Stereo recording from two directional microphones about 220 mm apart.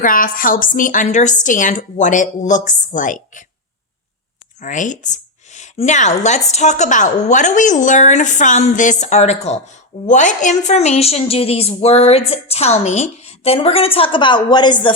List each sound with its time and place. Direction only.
0.0 s a woman's voice: 40° left (ahead or behind)
4.6 s a woman's voice: 35° left (ahead or behind)